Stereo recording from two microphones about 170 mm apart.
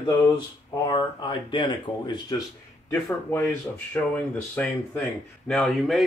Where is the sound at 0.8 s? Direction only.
30° left (ahead or behind).